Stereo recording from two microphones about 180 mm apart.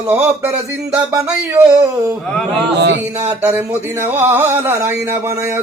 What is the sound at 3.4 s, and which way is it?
Speech, 10° right (ahead or behind).